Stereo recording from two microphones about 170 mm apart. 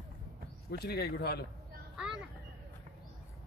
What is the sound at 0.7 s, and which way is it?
Speech, 70° left (ahead or behind).